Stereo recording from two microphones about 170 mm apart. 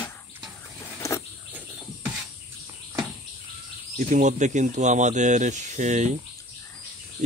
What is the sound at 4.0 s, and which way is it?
Speech, 45° right (ahead or behind).